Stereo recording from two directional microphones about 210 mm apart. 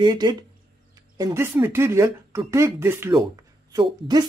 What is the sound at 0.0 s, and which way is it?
Speech, 20° right (ahead or behind).